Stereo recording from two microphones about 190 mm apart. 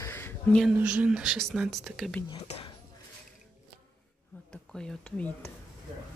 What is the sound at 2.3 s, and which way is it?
Speech, 30° left (ahead or behind).